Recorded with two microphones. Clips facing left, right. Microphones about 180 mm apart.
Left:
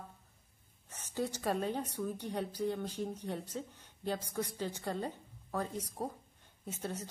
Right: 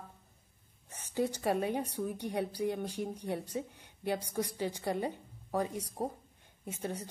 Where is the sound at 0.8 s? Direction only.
15° right (ahead or behind).